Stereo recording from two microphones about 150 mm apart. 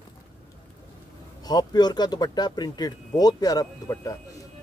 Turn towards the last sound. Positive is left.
turn(degrees=25)  # may be behind; listen again after turning